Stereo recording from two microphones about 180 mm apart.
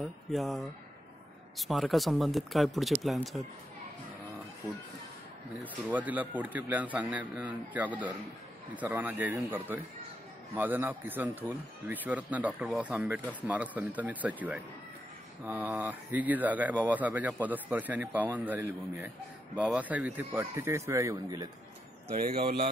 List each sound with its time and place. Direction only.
0.0 s speech: centre (ahead or behind)
5.6 s speech: 10° right (ahead or behind)
22.1 s speech: 50° right (ahead or behind)